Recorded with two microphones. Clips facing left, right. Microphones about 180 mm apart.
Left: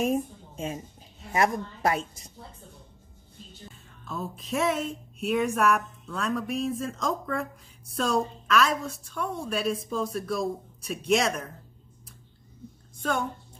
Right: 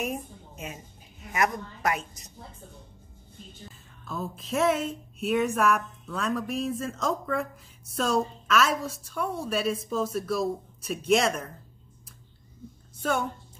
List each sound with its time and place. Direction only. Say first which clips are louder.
0.0 s a woman's voice: left 6 dB; 30° left (ahead or behind)
4.0 s a woman's voice: even; centre (ahead or behind)
13.0 s a woman's voice: right 1 dB; 5° right (ahead or behind)